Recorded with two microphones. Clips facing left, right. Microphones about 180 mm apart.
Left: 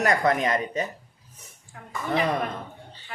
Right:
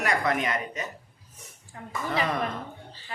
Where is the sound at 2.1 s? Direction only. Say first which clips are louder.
Left 4 dB; 35° left (ahead or behind).